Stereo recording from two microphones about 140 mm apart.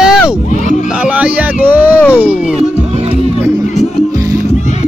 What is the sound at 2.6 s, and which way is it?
Music, 45° right (ahead or behind).